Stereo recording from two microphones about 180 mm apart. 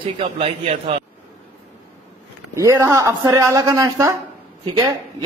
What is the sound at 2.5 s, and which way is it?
Speech, 15° right (ahead or behind).